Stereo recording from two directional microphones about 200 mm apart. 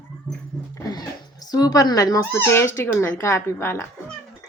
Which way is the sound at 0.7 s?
20° left (ahead or behind).